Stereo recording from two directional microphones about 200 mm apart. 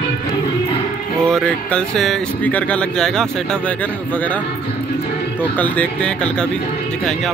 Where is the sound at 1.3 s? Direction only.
5° left (ahead or behind).